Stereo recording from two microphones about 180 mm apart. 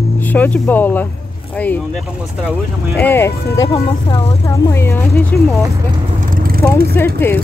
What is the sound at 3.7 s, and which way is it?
Speech, 30° left (ahead or behind).